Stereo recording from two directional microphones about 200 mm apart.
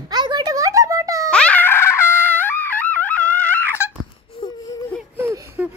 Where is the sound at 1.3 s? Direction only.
5° left (ahead or behind).